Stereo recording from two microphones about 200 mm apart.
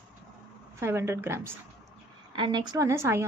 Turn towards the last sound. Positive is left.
turn(degrees=-10)  # may be behind; listen again after turning